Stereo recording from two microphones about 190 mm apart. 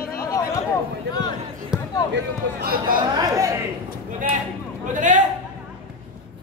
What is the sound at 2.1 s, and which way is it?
Speech, 50° right (ahead or behind).